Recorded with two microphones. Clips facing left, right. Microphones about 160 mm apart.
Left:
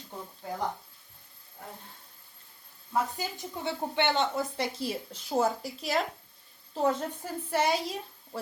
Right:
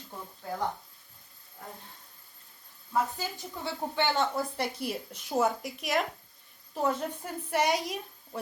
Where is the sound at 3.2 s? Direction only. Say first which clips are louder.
Left 1 dB; 20° left (ahead or behind).